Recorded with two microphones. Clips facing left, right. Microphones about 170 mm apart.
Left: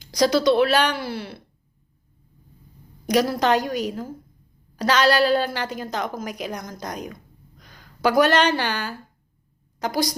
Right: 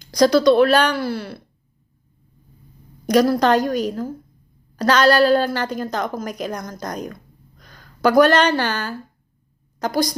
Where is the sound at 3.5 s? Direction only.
45° right (ahead or behind).